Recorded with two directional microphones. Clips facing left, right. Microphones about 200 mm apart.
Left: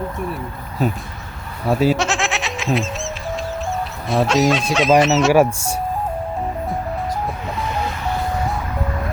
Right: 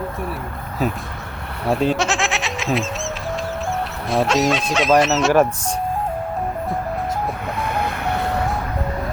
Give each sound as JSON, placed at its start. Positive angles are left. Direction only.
{"t": 0.8, "sound": "speech", "side_deg": 0}
{"t": 1.6, "sound": "goat", "side_deg": 5}
{"t": 4.1, "sound": "speech", "side_deg": 0}
{"t": 7.8, "sound": "vehicle", "side_deg": -60}